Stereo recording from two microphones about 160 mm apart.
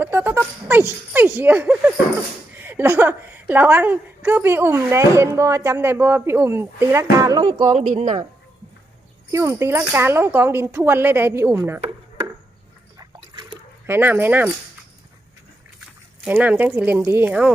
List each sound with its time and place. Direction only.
0.0 s a woman's voice: 15° right (ahead or behind)
7.8 s speech: 45° right (ahead or behind)
9.3 s a woman's voice: 20° right (ahead or behind)
13.0 s liquid: 30° right (ahead or behind)
13.8 s a woman's voice: 15° right (ahead or behind)
16.2 s a woman's voice: 10° right (ahead or behind)